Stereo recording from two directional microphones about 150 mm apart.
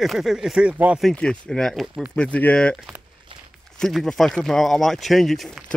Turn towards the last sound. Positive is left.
turn(degrees=0)  # may be behind; listen again after turning